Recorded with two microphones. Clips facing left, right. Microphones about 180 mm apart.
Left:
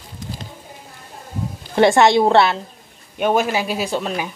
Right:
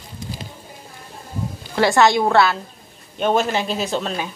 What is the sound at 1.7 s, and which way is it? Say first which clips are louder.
Speech: left 3 dB; 25° left (ahead or behind).